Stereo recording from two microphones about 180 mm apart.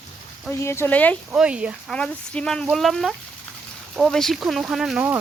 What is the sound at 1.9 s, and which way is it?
Speech, 5° left (ahead or behind).